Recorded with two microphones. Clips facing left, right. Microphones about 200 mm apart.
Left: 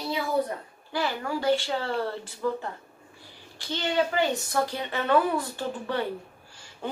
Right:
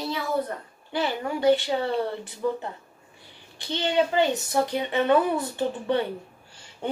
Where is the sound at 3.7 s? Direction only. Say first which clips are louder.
Right 3 dB; 20° right (ahead or behind).